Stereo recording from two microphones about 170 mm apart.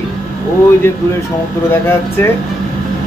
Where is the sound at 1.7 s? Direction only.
15° left (ahead or behind).